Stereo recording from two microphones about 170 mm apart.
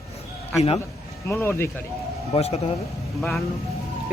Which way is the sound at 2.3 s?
35° left (ahead or behind).